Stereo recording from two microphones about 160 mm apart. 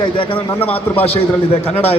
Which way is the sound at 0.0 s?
30° left (ahead or behind).